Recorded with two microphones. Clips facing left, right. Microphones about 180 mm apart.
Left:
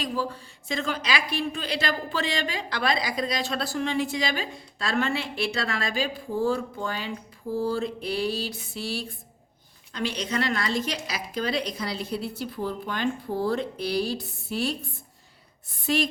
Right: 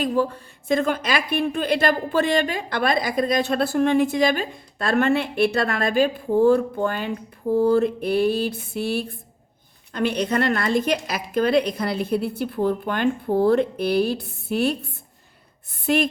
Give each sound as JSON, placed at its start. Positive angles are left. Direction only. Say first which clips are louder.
{"t": 0.0, "sound": "a woman's voice", "louder": "right 8 dB", "side_deg": -55}